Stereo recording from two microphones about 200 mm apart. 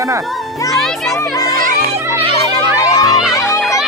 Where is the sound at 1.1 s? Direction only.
15° left (ahead or behind).